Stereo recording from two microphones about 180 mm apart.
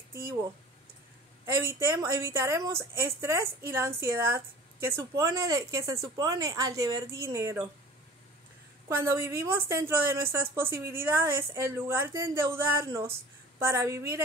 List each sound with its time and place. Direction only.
0.1 s speech: 15° right (ahead or behind)
1.4 s a woman's voice: 15° right (ahead or behind)
8.8 s a woman's voice: 15° right (ahead or behind)